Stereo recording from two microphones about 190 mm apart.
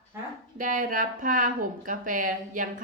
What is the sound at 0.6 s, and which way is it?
A woman's voice, 45° right (ahead or behind).